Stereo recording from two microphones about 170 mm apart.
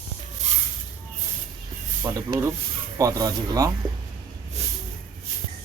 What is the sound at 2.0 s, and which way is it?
Speech, 20° right (ahead or behind).